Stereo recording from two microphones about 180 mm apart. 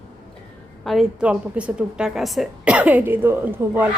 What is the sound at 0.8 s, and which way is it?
A woman's voice, 5° right (ahead or behind).